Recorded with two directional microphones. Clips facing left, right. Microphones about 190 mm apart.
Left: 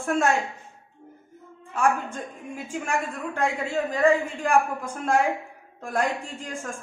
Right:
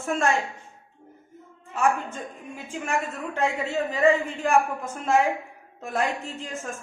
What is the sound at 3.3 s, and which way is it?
A woman's voice, 5° right (ahead or behind).